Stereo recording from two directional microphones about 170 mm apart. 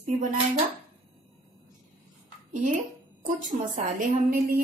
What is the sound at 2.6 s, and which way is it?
Speech, 50° right (ahead or behind).